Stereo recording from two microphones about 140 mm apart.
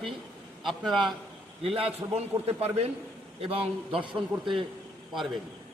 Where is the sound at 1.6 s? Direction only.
45° right (ahead or behind).